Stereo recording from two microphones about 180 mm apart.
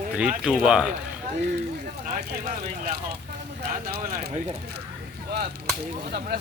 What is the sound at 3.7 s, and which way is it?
Speech, 55° right (ahead or behind).